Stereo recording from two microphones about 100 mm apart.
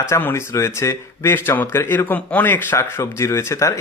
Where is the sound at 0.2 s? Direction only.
25° left (ahead or behind).